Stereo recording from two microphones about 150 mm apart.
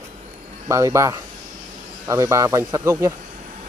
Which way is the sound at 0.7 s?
20° right (ahead or behind).